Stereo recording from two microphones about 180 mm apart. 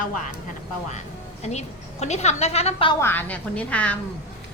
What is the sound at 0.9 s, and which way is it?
A woman's voice, 40° left (ahead or behind).